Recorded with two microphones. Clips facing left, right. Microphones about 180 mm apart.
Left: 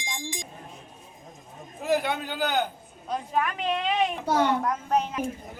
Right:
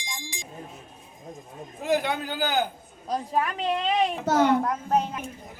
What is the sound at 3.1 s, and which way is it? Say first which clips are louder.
A woman's voice: right 1 dB; 35° right (ahead or behind).